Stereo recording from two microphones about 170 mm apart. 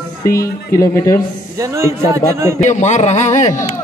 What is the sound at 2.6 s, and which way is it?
Speech, 45° left (ahead or behind).